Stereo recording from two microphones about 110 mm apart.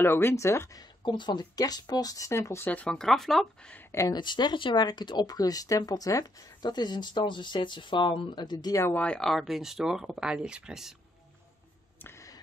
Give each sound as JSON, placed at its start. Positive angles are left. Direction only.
{"t": 0.0, "sound": "speech", "side_deg": 20}
{"t": 1.0, "sound": "speech", "side_deg": 45}
{"t": 4.1, "sound": "speech", "side_deg": 45}
{"t": 8.8, "sound": "speech", "side_deg": 10}